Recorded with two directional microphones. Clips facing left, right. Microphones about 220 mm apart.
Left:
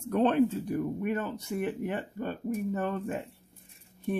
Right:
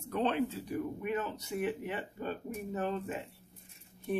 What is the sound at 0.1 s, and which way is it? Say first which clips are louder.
Speech: left 7 dB; 50° left (ahead or behind).